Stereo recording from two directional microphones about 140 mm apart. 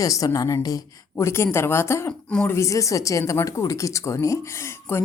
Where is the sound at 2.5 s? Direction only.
25° left (ahead or behind).